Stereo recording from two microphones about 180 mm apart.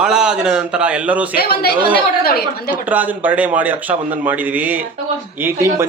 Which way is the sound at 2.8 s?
10° right (ahead or behind).